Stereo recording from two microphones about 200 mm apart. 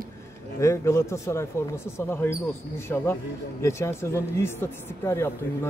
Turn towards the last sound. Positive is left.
turn(degrees=15)  # may be behind; listen again after turning